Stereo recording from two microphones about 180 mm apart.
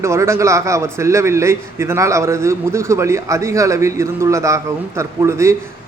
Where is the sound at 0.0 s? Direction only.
15° right (ahead or behind).